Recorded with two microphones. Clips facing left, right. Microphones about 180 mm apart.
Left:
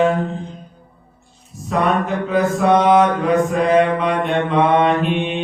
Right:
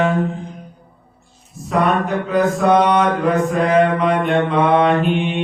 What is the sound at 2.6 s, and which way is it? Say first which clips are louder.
Mantra: left 2 dB; centre (ahead or behind).